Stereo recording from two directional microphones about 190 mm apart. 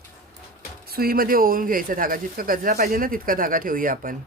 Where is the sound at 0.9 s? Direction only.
50° right (ahead or behind).